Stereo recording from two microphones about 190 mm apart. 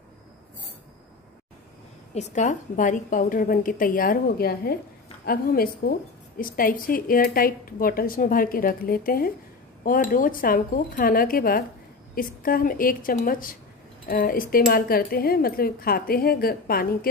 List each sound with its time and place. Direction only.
2.1 s a woman's voice: 40° left (ahead or behind)